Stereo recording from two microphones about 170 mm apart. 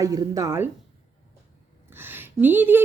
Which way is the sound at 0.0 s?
20° right (ahead or behind).